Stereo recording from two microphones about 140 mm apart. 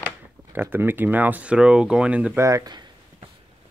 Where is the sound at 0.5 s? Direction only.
15° right (ahead or behind).